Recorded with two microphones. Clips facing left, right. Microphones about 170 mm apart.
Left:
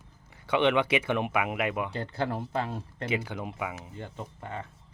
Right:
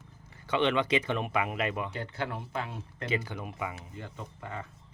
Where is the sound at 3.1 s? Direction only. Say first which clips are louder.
Left 1 dB; 10° left (ahead or behind).